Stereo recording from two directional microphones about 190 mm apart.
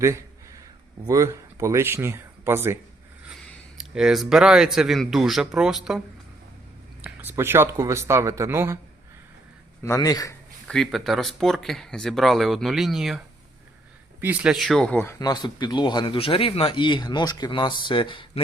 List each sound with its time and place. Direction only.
0.0 s a sound: 15° right (ahead or behind)
1.0 s speech: 15° right (ahead or behind)
7.0 s speech: 10° right (ahead or behind)
9.8 s a man's voice: 15° left (ahead or behind)
10.7 s speech: centre (ahead or behind)
15.2 s speech: 20° left (ahead or behind)